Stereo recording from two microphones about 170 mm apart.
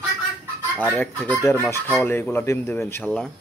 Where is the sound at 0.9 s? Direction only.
10° left (ahead or behind).